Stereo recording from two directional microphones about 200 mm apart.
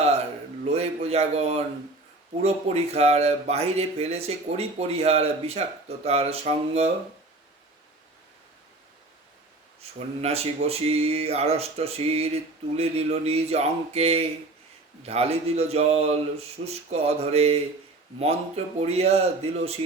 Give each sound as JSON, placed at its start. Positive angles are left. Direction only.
{"t": 0.6, "sound": "a sound", "side_deg": -30}
{"t": 2.4, "sound": "speech", "side_deg": -30}
{"t": 10.2, "sound": "speech", "side_deg": -30}